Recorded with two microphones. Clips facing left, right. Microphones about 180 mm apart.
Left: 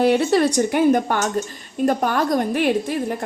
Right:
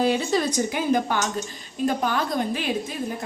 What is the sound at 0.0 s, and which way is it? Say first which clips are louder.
A woman's voice: left 6 dB; 65° left (ahead or behind).